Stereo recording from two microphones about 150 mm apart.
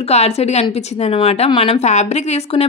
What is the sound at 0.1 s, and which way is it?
A woman's voice, 45° left (ahead or behind).